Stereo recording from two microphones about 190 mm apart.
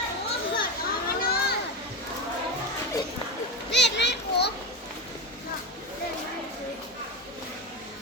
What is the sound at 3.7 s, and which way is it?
Children playing, 65° left (ahead or behind).